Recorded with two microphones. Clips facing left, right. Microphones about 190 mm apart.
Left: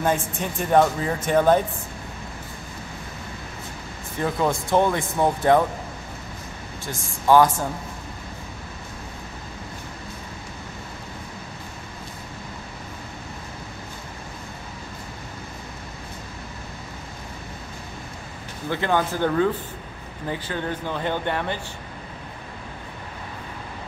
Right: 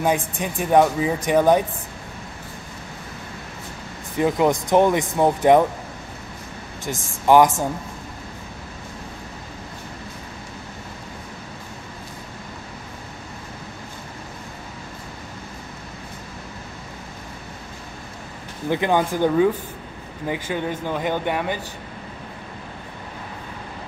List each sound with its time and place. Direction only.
0.0 s speech: 10° right (ahead or behind)
4.2 s speech: 15° right (ahead or behind)
6.8 s speech: 20° right (ahead or behind)
18.7 s speech: 15° right (ahead or behind)